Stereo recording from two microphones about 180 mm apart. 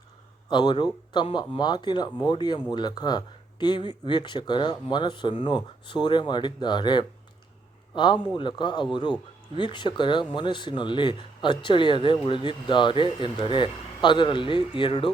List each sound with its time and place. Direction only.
0.5 s speech: 25° left (ahead or behind)